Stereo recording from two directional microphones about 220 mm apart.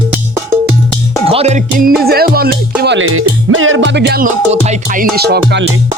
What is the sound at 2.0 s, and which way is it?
Speech, 45° right (ahead or behind).